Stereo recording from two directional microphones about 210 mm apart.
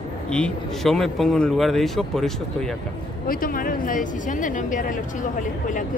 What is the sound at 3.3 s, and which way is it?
A woman's voice, 40° left (ahead or behind).